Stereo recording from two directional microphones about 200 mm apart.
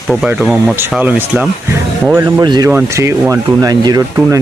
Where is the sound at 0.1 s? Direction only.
5° right (ahead or behind).